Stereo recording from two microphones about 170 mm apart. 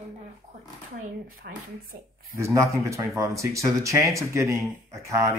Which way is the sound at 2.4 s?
15° right (ahead or behind).